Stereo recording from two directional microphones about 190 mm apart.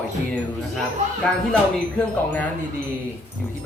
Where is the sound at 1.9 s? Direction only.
5° left (ahead or behind).